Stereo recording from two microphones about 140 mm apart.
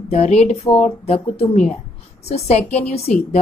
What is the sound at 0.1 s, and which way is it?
A woman's voice, 50° left (ahead or behind).